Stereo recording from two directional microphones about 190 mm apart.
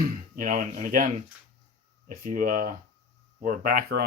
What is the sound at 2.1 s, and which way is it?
Speech, 45° right (ahead or behind).